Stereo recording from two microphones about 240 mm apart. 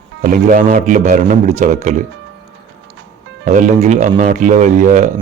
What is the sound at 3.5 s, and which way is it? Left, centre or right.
Speech, right.